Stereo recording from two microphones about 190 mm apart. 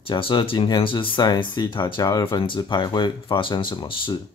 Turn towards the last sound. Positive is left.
turn(degrees=25)  # may be behind; listen again after turning